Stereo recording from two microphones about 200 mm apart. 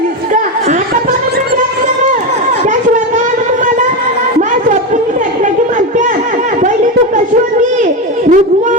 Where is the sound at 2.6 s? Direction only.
40° right (ahead or behind).